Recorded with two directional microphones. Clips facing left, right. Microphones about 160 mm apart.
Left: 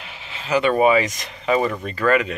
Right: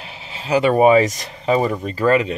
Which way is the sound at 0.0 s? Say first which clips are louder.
Right 2 dB; 35° right (ahead or behind).